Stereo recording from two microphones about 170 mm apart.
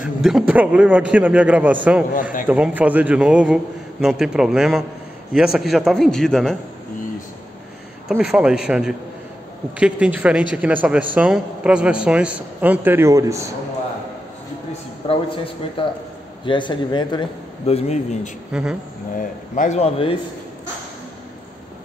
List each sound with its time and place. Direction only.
0.0 s a man's voice: 5° right (ahead or behind)
8.1 s a man's voice: 5° right (ahead or behind)
14.7 s a sound: 35° left (ahead or behind)
15.8 s a man's voice: 30° left (ahead or behind)
18.5 s a man's voice: 5° right (ahead or behind)
19.1 s speech: 50° left (ahead or behind)